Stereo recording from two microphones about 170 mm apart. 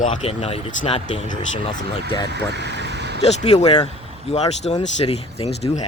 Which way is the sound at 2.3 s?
85° right.